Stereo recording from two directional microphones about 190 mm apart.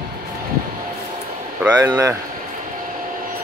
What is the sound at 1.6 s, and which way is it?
Speech, 15° right (ahead or behind).